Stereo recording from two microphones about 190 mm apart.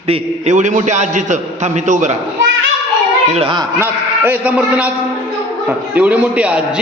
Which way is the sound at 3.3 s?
25° right (ahead or behind).